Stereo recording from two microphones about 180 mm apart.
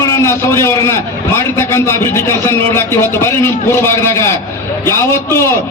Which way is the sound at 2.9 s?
15° left (ahead or behind).